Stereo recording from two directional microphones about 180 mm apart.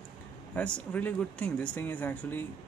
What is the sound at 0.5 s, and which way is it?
Speech, 10° left (ahead or behind).